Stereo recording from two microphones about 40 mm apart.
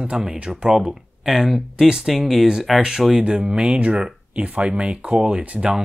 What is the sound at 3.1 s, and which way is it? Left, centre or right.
Speech, centre.